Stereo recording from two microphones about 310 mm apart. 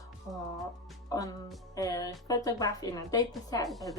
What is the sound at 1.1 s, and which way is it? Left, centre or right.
Speech, centre.